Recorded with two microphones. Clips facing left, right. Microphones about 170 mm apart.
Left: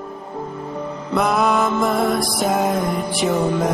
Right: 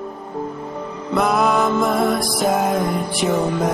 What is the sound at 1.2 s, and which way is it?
Music, centre (ahead or behind).